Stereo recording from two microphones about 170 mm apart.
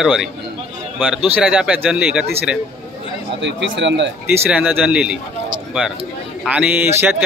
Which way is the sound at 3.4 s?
90° right.